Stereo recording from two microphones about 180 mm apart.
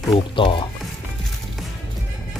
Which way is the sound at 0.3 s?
30° left (ahead or behind).